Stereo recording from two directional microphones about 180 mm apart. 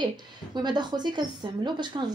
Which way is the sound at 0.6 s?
25° right (ahead or behind).